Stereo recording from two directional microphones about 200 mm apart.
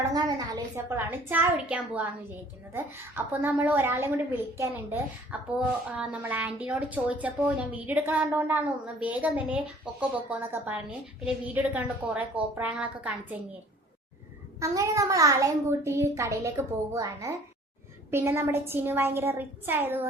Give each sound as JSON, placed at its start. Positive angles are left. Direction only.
{"t": 0.1, "sound": "a woman's voice", "side_deg": -20}
{"t": 3.3, "sound": "a woman's voice", "side_deg": -10}
{"t": 14.6, "sound": "a woman's voice", "side_deg": -15}